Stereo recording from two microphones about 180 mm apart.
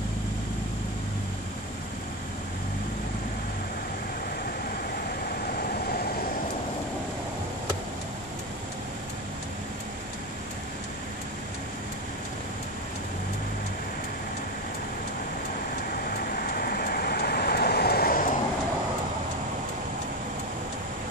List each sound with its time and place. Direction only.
5.0 s vehicle: 55° left (ahead or behind)
16.2 s train: 55° left (ahead or behind)